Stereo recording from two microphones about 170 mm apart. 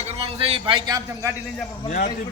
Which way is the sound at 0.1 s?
35° right (ahead or behind).